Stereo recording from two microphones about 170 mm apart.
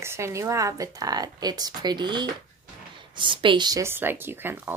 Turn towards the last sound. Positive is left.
turn(degrees=-10)  # may be behind; listen again after turning